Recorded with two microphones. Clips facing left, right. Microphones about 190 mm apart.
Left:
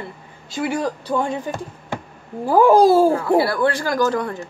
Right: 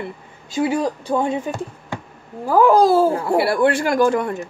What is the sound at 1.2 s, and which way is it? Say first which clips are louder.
Speech: right 2 dB; 25° right (ahead or behind).